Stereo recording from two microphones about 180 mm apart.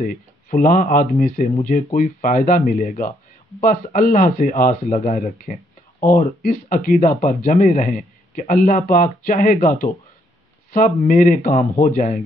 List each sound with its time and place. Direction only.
0.0 s speech: 50° left (ahead or behind)
11.1 s speech: 50° left (ahead or behind)